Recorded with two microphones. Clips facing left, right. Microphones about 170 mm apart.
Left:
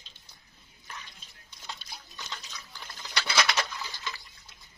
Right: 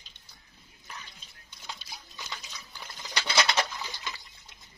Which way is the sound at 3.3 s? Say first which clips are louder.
Right 2 dB; 25° right (ahead or behind).